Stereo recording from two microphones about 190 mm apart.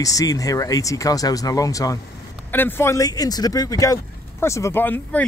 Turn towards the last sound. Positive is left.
turn(degrees=10)  # may be behind; listen again after turning